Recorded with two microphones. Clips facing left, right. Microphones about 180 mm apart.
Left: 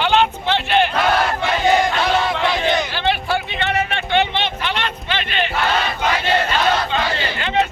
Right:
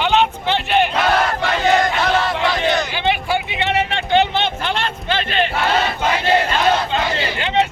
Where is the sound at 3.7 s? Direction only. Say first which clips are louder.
Right 3 dB; 30° right (ahead or behind).